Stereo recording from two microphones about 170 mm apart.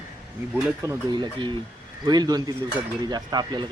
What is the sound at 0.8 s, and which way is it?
Speech, 25° right (ahead or behind).